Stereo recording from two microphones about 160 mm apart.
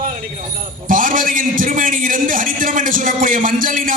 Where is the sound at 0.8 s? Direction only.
60° right (ahead or behind).